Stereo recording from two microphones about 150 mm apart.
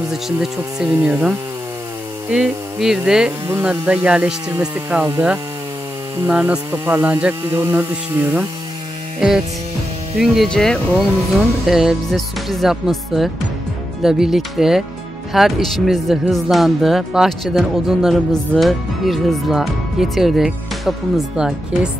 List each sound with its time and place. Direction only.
0.1 s speech: 5° right (ahead or behind)
2.3 s speech: 5° right (ahead or behind)
10.1 s speech: centre (ahead or behind)